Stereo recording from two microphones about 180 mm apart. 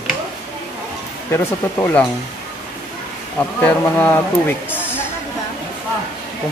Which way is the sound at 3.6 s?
10° left (ahead or behind).